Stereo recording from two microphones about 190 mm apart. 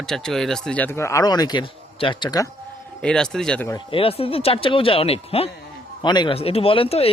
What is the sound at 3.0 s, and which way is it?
Speech, 5° left (ahead or behind).